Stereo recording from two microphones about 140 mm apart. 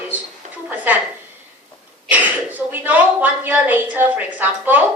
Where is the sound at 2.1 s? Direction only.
10° right (ahead or behind).